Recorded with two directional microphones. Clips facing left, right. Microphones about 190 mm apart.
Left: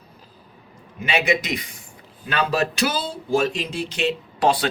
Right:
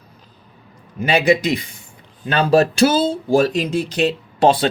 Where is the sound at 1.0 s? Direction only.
35° right (ahead or behind).